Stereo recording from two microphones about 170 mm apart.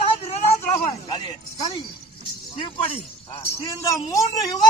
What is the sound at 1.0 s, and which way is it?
Speech, 20° left (ahead or behind).